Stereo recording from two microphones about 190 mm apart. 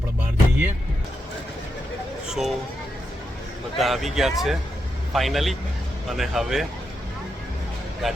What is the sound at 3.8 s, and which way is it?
Speech, centre (ahead or behind).